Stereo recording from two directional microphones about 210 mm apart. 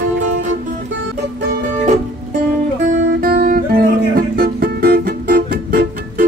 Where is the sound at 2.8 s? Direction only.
50° right (ahead or behind).